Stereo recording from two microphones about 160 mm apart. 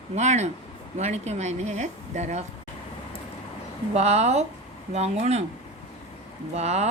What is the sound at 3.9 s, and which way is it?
Speech, 45° right (ahead or behind).